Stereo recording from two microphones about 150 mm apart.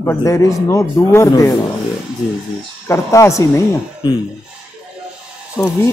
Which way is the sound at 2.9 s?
20° left (ahead or behind).